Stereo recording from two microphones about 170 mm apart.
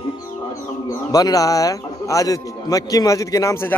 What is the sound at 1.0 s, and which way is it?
A man's voice, 20° left (ahead or behind).